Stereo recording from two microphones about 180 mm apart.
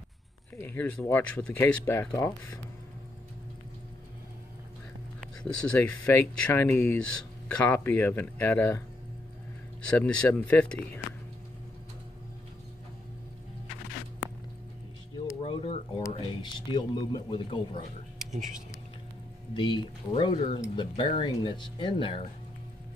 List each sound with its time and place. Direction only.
0.6 s speech: 10° left (ahead or behind)
5.4 s speech: 5° left (ahead or behind)
9.8 s speech: 5° left (ahead or behind)
15.4 s a sound: 30° left (ahead or behind)
16.1 s speech: 30° left (ahead or behind)
18.3 s speech: 45° right (ahead or behind)
19.5 s speech: 25° left (ahead or behind)